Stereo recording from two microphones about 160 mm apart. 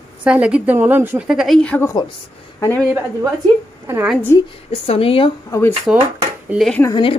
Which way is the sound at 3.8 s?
15° right (ahead or behind).